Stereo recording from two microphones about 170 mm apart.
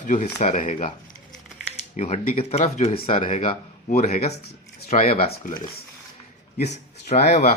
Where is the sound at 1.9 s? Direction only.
40° left (ahead or behind).